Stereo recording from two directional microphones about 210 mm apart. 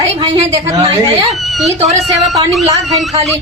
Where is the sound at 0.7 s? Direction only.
15° right (ahead or behind).